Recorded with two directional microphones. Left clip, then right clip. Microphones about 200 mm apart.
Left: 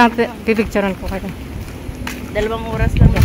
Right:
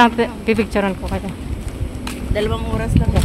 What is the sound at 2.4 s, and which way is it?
Speech, 55° right (ahead or behind).